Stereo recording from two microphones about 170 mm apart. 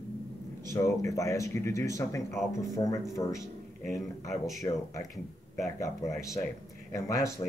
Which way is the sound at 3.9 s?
Centre (ahead or behind).